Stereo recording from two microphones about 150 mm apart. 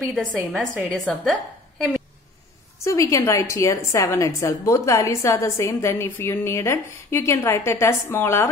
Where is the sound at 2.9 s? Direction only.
20° left (ahead or behind).